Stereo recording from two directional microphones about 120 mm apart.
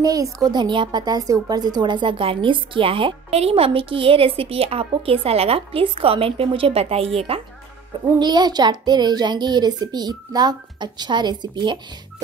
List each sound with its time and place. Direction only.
0.0 s a woman's voice: 30° right (ahead or behind); by 7.4 s 50° right (ahead or behind)
8.2 s a woman's voice: 40° right (ahead or behind)